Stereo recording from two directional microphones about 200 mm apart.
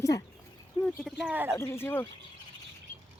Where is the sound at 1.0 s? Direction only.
5° right (ahead or behind).